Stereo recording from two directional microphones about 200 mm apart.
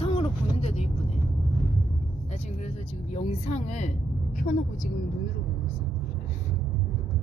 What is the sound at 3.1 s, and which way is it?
Speech, 35° left (ahead or behind).